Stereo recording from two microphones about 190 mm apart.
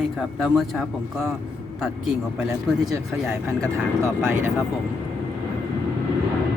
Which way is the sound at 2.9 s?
15° right (ahead or behind).